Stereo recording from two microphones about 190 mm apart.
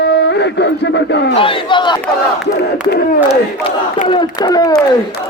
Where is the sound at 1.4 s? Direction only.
25° left (ahead or behind).